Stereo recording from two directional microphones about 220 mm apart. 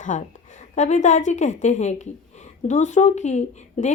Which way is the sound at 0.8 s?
35° left (ahead or behind).